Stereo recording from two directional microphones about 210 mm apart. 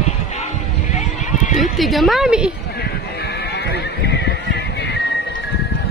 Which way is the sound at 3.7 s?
50° left (ahead or behind).